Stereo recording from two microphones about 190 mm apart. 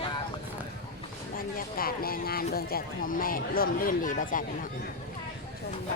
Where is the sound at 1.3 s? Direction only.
50° left (ahead or behind).